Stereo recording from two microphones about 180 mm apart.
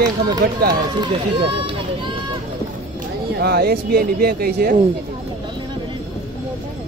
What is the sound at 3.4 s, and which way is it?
Speech, 60° right (ahead or behind).